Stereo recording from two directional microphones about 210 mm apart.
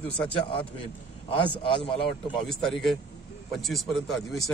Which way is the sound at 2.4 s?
Centre (ahead or behind).